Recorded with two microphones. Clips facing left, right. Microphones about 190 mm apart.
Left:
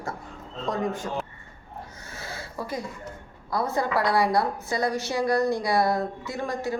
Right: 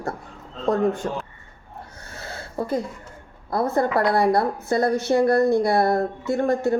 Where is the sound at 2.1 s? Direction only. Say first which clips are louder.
Right 2 dB; 60° right (ahead or behind).